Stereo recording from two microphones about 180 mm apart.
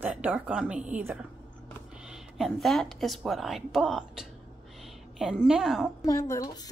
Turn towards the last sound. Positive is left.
turn(degrees=20)  # may be behind; listen again after turning